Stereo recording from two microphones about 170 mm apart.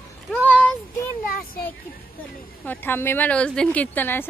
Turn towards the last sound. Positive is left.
turn(degrees=10)  # may be behind; listen again after turning